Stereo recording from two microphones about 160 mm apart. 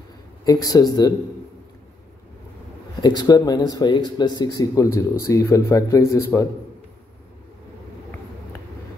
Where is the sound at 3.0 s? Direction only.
25° left (ahead or behind).